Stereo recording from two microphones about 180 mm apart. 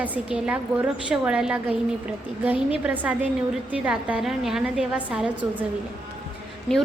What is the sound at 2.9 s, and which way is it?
A woman's voice, 10° right (ahead or behind).